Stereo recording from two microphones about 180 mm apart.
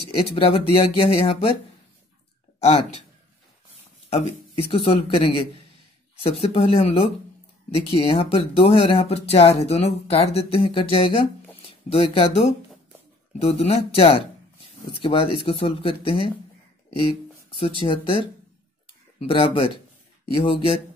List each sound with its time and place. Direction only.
0.1 s speech: 30° left (ahead or behind)
2.6 s speech: 35° left (ahead or behind)
4.1 s speech: 30° left (ahead or behind)
6.4 s speech: 30° left (ahead or behind)
17.6 s speech: 30° left (ahead or behind)